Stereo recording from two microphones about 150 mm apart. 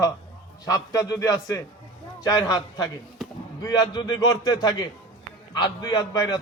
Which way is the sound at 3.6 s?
30° left (ahead or behind).